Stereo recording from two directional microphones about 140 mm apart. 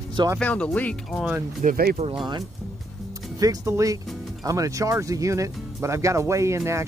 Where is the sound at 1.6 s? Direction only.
90° right.